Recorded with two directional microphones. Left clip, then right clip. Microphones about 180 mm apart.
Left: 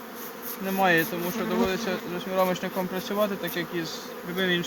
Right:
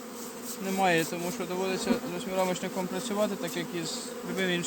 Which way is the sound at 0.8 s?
20° right (ahead or behind).